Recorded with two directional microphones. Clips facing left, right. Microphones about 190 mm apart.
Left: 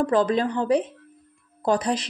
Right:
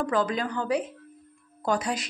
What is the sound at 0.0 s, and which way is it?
Speech, 30° left (ahead or behind).